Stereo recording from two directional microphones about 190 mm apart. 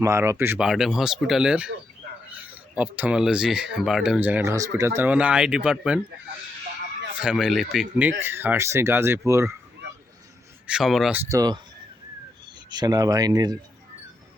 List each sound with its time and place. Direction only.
0.0 s speech: 15° right (ahead or behind)
7.2 s speech: 5° right (ahead or behind)
10.7 s speech: centre (ahead or behind)
11.3 s speech: 20° right (ahead or behind)
12.7 s speech: 20° right (ahead or behind)